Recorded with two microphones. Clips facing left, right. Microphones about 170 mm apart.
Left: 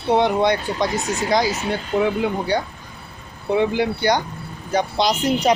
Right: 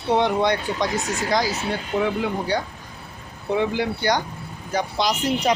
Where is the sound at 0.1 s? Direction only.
15° left (ahead or behind).